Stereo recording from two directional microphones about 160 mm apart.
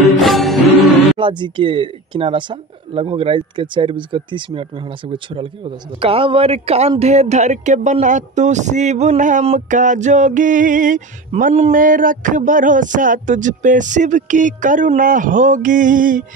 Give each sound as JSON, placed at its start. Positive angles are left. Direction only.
{"t": 0.2, "sound": "music", "side_deg": 0}
{"t": 1.1, "sound": "speech", "side_deg": -30}